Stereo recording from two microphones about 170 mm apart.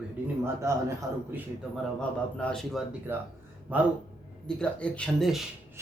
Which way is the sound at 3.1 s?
15° right (ahead or behind).